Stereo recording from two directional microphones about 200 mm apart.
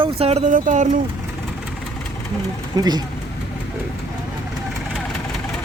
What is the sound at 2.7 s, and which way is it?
Speech, 20° right (ahead or behind).